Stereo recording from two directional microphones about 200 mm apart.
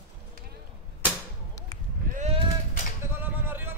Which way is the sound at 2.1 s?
35° right (ahead or behind).